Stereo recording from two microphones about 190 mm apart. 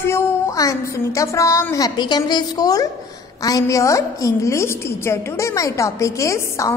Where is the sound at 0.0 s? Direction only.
15° left (ahead or behind).